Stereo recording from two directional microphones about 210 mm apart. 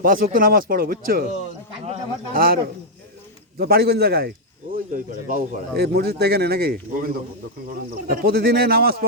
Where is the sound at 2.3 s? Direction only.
45° right (ahead or behind).